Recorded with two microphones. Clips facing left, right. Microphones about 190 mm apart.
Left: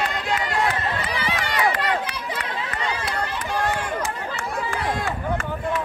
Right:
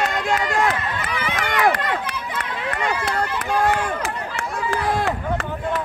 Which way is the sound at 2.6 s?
60° right (ahead or behind).